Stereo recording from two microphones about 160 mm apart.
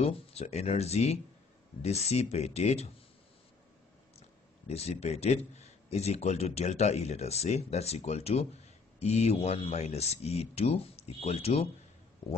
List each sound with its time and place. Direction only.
0.0 s a man's voice: 40° left (ahead or behind)
4.6 s a man's voice: 40° left (ahead or behind)